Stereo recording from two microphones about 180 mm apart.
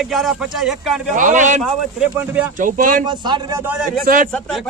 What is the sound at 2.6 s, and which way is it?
Speech, 50° right (ahead or behind).